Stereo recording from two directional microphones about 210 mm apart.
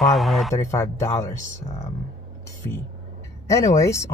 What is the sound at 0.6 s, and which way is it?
Speech, 15° left (ahead or behind).